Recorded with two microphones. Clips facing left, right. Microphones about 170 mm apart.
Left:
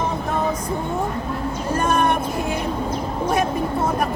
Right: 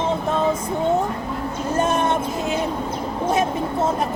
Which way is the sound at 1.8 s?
25° right (ahead or behind).